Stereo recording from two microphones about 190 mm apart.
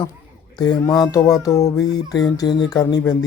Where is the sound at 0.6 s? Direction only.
20° left (ahead or behind).